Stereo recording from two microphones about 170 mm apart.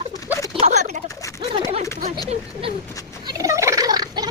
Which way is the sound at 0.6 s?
40° right (ahead or behind).